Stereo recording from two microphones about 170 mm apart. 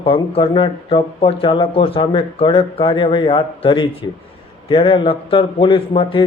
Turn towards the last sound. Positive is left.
turn(degrees=30)  # may be behind; listen again after turning